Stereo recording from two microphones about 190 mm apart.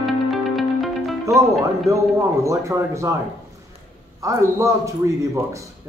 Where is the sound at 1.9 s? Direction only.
15° right (ahead or behind).